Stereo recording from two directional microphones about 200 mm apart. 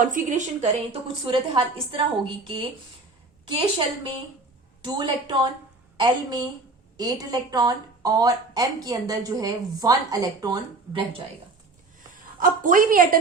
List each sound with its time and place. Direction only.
0.0 s a woman's voice: 40° right (ahead or behind)
1.2 s speech: 25° right (ahead or behind)
6.9 s speech: 20° right (ahead or behind)
12.4 s a woman's voice: 45° right (ahead or behind)